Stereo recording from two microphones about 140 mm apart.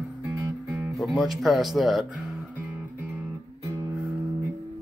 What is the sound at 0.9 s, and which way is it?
Speech, centre (ahead or behind).